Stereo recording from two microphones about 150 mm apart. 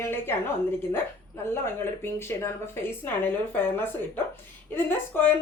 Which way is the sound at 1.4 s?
15° left (ahead or behind).